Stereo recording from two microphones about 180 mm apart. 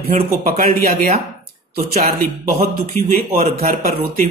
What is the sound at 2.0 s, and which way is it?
Speech, 50° right (ahead or behind).